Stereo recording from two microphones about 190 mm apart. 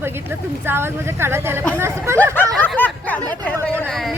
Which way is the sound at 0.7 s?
10° right (ahead or behind).